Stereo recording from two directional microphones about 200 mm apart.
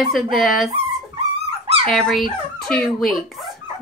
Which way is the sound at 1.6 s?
30° right (ahead or behind).